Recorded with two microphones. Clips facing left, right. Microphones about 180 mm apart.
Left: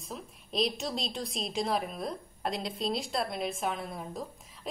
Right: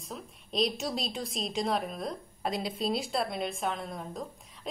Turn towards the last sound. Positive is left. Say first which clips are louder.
# even
turn(degrees=0)  # may be behind; listen again after turning